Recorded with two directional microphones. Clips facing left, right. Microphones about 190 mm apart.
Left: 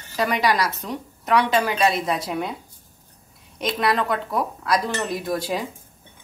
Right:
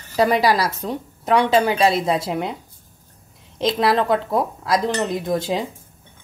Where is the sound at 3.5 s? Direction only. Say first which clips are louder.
Right 4 dB; 25° right (ahead or behind).